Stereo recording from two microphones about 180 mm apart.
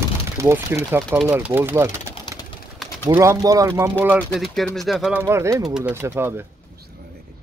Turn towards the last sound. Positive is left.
turn(degrees=-15)  # may be behind; listen again after turning